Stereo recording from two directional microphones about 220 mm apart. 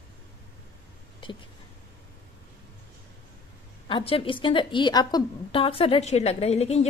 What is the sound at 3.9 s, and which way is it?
A woman's voice, 25° left (ahead or behind).